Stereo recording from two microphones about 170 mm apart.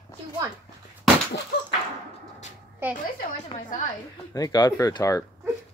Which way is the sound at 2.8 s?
10° right (ahead or behind).